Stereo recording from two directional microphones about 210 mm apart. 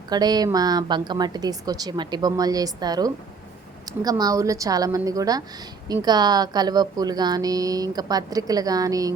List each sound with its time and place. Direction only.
0.1 s a woman's voice: 20° right (ahead or behind)